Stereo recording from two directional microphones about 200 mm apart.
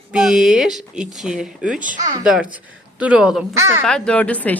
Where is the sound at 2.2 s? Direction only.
5° right (ahead or behind).